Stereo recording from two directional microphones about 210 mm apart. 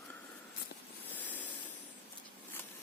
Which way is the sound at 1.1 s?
10° left (ahead or behind).